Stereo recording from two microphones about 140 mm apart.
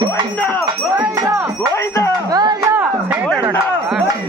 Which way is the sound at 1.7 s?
20° left (ahead or behind).